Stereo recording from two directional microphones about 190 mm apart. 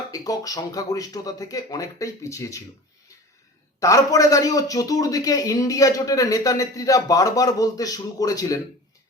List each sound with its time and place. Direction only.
0.1 s a man's voice: 20° left (ahead or behind)
3.8 s a man's voice: 15° left (ahead or behind)